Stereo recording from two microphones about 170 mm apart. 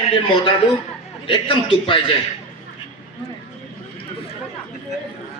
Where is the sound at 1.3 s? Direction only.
30° left (ahead or behind).